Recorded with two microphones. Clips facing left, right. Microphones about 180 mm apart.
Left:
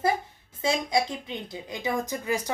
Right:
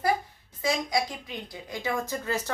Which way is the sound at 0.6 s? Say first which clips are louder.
Left 2 dB; 25° left (ahead or behind).